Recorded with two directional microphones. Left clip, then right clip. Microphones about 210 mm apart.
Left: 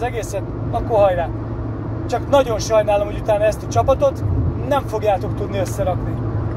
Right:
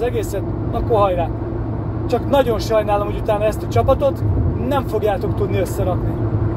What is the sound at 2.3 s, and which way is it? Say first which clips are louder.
Speech: left 2 dB; 20° left (ahead or behind).